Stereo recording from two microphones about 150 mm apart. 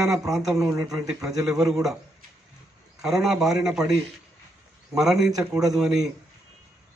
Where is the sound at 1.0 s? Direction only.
5° right (ahead or behind).